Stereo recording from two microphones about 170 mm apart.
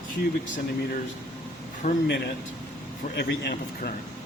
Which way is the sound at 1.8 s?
40° left (ahead or behind).